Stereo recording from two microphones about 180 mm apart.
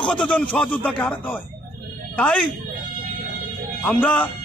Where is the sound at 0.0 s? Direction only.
5° left (ahead or behind).